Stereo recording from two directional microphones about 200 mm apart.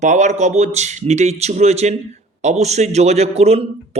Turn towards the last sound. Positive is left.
turn(degrees=-30)  # may be behind; listen again after turning